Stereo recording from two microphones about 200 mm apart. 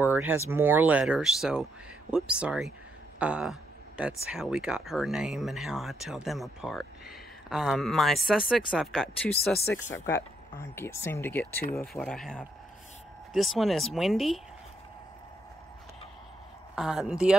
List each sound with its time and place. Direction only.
0.0 s a sound: 10° right (ahead or behind)
0.5 s speech: 10° right (ahead or behind)
9.3 s speech: 50° left (ahead or behind)
9.8 s speech: 10° left (ahead or behind)
16.7 s speech: centre (ahead or behind)